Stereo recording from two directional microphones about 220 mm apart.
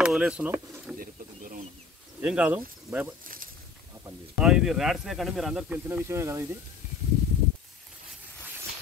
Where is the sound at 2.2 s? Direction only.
5° right (ahead or behind).